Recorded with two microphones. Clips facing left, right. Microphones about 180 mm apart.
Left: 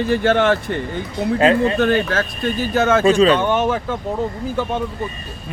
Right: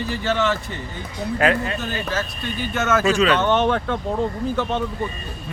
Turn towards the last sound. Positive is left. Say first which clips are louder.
# left 1 dB
turn(degrees=10)  # may be behind; listen again after turning